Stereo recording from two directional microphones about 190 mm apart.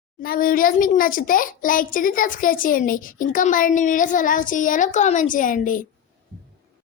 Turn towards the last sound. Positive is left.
turn(degrees=45)  # may be behind; listen again after turning